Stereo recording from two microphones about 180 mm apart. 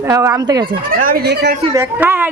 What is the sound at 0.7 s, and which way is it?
Speech, 50° right (ahead or behind).